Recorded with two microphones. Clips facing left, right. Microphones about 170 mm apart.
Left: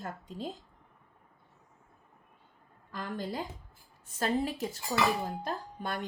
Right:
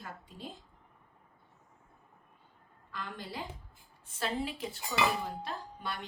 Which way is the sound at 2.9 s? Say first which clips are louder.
Left 6 dB; 45° left (ahead or behind).